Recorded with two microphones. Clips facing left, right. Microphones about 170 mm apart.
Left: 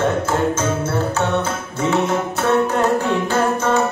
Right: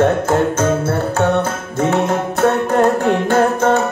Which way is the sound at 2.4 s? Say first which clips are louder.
Right 4 dB; 50° right (ahead or behind).